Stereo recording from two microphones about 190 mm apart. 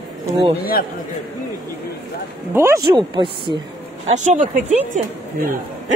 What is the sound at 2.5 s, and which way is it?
A woman's voice, 20° right (ahead or behind).